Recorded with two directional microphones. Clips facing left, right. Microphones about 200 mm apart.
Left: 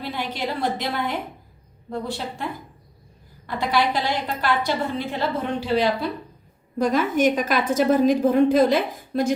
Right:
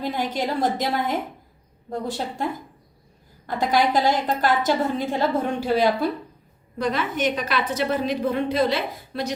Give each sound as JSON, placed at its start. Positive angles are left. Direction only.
{"t": 0.0, "sound": "a woman's voice", "side_deg": -45}
{"t": 6.7, "sound": "a woman's voice", "side_deg": 45}